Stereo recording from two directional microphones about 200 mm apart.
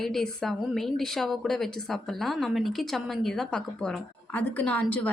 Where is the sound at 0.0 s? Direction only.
Centre (ahead or behind).